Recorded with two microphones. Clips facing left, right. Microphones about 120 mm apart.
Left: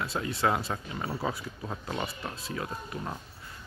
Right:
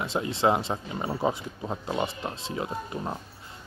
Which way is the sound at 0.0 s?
25° right (ahead or behind).